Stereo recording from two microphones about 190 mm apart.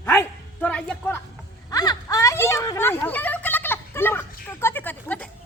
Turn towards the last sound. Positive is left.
turn(degrees=10)  # may be behind; listen again after turning